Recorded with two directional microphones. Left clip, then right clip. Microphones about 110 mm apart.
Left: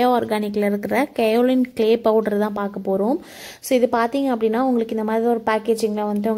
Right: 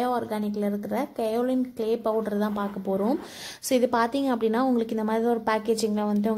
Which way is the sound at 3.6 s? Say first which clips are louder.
Left 5 dB; 25° left (ahead or behind).